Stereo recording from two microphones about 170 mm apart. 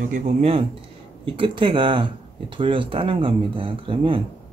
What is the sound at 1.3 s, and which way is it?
Speech, 30° right (ahead or behind).